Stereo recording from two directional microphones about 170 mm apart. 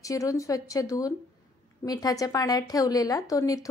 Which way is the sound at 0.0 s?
20° left (ahead or behind).